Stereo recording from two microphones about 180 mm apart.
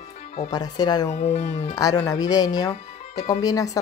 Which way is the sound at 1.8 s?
20° left (ahead or behind).